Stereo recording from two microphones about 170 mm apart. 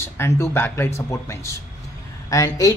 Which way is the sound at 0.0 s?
15° left (ahead or behind).